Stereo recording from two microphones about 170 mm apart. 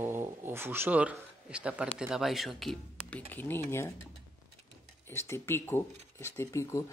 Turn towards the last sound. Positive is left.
turn(degrees=15)  # may be behind; listen again after turning